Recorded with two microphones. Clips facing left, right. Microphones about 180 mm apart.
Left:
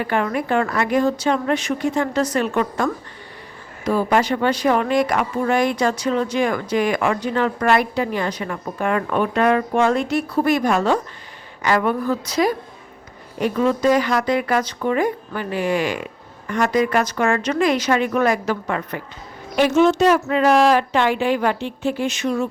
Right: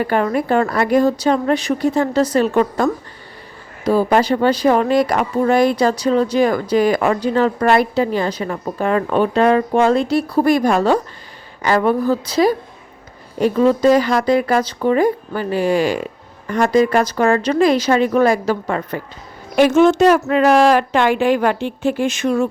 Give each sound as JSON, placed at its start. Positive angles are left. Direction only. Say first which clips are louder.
{"t": 0.0, "sound": "a woman's voice", "louder": "right 4 dB", "side_deg": -40}
{"t": 19.5, "sound": "a woman's voice", "louder": "right 4 dB", "side_deg": -50}